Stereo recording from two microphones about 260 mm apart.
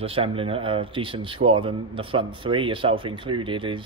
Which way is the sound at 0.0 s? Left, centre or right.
Right.